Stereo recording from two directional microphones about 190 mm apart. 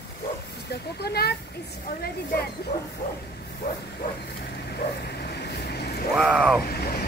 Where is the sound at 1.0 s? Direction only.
55° left (ahead or behind).